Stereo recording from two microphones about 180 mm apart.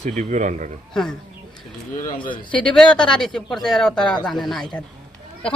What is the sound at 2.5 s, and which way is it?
Speech, 5° left (ahead or behind).